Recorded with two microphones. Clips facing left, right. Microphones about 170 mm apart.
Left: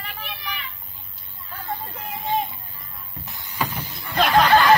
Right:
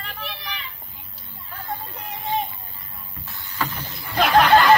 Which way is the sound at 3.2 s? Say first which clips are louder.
Left 1 dB; 15° left (ahead or behind).